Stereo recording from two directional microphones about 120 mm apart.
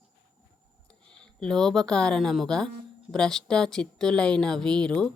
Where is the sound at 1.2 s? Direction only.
5° left (ahead or behind).